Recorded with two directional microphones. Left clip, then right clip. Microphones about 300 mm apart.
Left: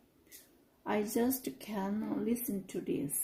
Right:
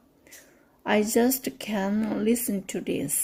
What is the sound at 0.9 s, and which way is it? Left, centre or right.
Speech, right.